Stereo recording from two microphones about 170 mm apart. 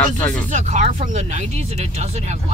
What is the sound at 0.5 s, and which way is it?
Speech, 45° right (ahead or behind).